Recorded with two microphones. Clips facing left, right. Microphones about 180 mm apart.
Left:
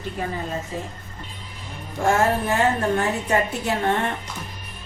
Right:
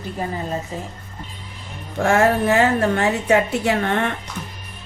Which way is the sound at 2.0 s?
70° right (ahead or behind).